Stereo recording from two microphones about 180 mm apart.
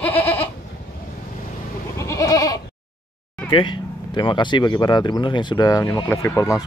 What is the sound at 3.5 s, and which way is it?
Speech, 25° left (ahead or behind).